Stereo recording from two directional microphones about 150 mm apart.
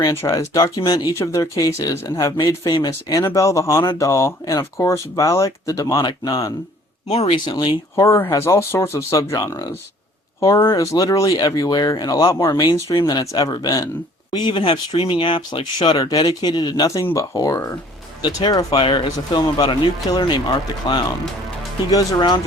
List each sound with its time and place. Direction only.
0.0 s speech: 20° left (ahead or behind)
7.1 s speech: 40° left (ahead or behind)
8.0 s speech: 15° left (ahead or behind)